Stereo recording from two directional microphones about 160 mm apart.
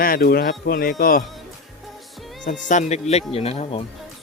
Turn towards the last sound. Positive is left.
turn(degrees=35)  # may be behind; listen again after turning